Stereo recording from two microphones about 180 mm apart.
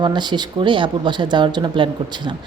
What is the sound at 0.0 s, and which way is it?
Speech, 25° right (ahead or behind).